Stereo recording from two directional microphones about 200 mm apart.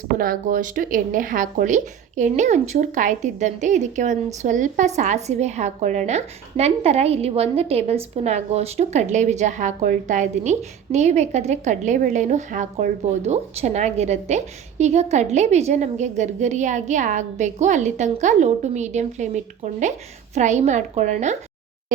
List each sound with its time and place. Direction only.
0.2 s a woman's voice: 45° right (ahead or behind)